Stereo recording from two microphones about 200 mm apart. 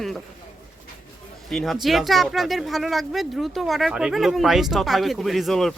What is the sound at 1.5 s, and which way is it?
Speech, centre (ahead or behind).